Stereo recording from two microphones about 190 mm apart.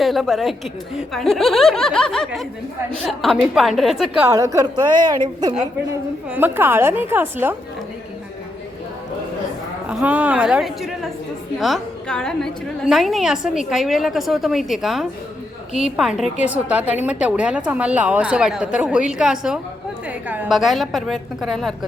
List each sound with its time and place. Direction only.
0.0 s a woman's voice: centre (ahead or behind)
4.3 s a woman's voice: 15° right (ahead or behind)
6.3 s a woman's voice: 10° right (ahead or behind)
9.9 s a woman's voice: 5° right (ahead or behind)